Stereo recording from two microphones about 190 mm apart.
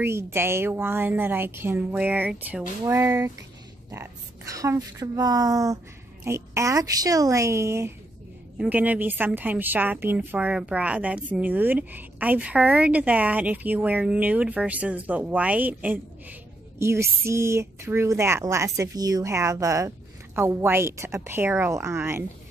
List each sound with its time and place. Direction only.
0.0 s a woman's voice: 15° right (ahead or behind)